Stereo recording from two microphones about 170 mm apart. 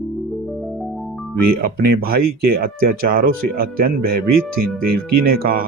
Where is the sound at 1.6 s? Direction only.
60° right (ahead or behind).